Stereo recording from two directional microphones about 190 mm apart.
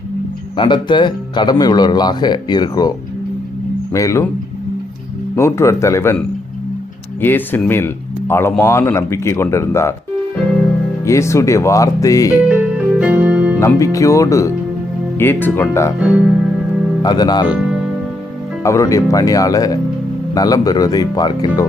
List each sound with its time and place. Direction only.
0.5 s speech: 25° left (ahead or behind)
3.9 s speech: 15° left (ahead or behind)
5.4 s speech: 15° left (ahead or behind)
11.0 s speech: 15° left (ahead or behind)
12.5 s keyboard: 5° right (ahead or behind)
13.6 s speech: 15° left (ahead or behind)
16.0 s speech: 5° right (ahead or behind)
17.0 s speech: 20° left (ahead or behind)
17.5 s music: 5° right (ahead or behind)
18.6 s speech: 15° left (ahead or behind)